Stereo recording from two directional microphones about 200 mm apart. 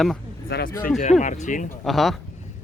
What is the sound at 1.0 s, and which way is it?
Speech, 35° left (ahead or behind).